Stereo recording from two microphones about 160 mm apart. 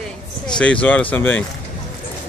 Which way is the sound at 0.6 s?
10° left (ahead or behind).